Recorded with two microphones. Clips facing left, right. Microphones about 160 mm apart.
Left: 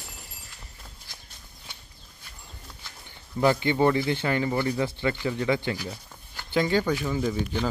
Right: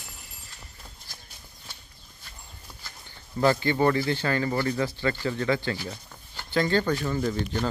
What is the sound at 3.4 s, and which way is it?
Speech, 15° left (ahead or behind).